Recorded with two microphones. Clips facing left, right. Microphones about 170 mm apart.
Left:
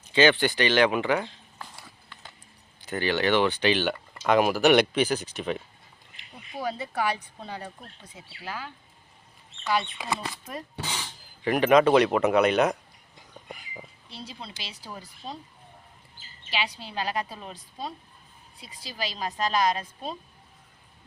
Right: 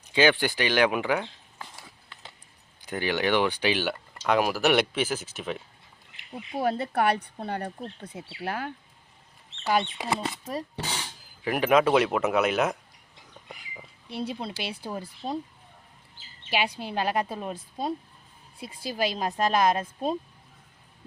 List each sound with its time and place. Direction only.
0.0 s speech: 10° right (ahead or behind)
2.8 s speech: 10° right (ahead or behind)
4.2 s speech: centre (ahead or behind)
6.6 s speech: 60° right (ahead or behind)
10.0 s speech: 30° right (ahead or behind)
11.4 s speech: 5° right (ahead or behind)
14.1 s speech: 55° right (ahead or behind)
16.5 s speech: 55° right (ahead or behind)